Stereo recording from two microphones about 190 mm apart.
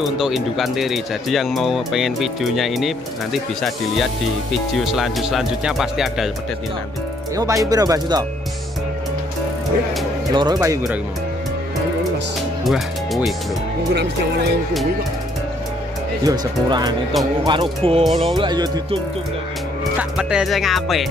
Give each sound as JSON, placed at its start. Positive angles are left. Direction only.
{"t": 0.0, "sound": "speech", "side_deg": 0}
{"t": 7.3, "sound": "speech", "side_deg": -15}
{"t": 10.3, "sound": "speech", "side_deg": -20}
{"t": 12.6, "sound": "speech", "side_deg": 0}
{"t": 16.3, "sound": "speech", "side_deg": -20}
{"t": 17.1, "sound": "speech", "side_deg": 0}
{"t": 17.5, "sound": "speech", "side_deg": -25}
{"t": 20.0, "sound": "speech", "side_deg": -5}